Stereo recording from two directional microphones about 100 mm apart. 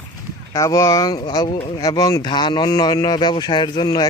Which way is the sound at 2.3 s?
50° left (ahead or behind).